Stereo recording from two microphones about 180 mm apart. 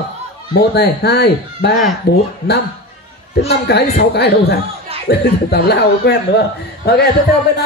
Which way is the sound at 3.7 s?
65° left (ahead or behind).